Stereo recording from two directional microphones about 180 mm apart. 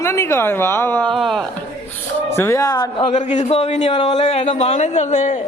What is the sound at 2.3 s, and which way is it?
Speech, 15° left (ahead or behind).